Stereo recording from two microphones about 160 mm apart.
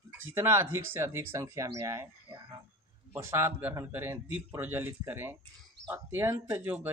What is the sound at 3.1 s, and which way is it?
A man's voice, 15° right (ahead or behind).